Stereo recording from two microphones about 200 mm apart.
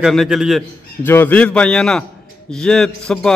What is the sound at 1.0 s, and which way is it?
A man's voice, 10° left (ahead or behind).